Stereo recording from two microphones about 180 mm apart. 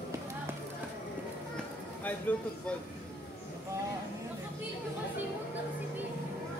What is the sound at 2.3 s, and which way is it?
Speech, 10° left (ahead or behind).